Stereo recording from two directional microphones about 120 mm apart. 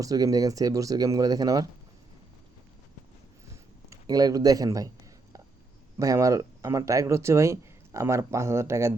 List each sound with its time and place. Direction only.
0.0 s speech: 30° right (ahead or behind)
3.8 s speech: 30° right (ahead or behind)
6.0 s speech: 25° right (ahead or behind)